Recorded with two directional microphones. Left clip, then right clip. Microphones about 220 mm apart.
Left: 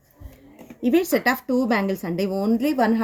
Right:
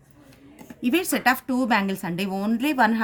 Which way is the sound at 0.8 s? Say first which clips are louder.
Left 2 dB; 50° right (ahead or behind).